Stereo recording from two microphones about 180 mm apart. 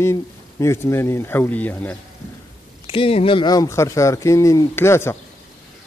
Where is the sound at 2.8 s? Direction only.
30° left (ahead or behind); by 5.1 s 15° left (ahead or behind).